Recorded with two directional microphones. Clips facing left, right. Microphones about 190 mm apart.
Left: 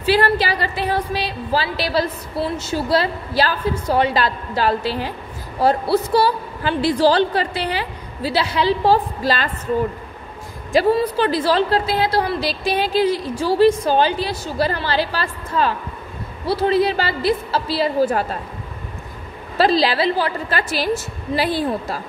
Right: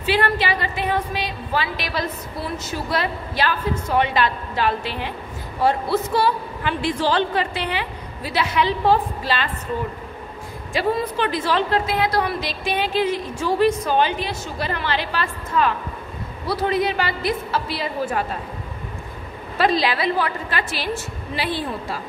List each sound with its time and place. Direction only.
0.0 s a woman's voice: 35° left (ahead or behind)
10.7 s a woman's voice: 35° left (ahead or behind)
19.5 s a woman's voice: 35° left (ahead or behind)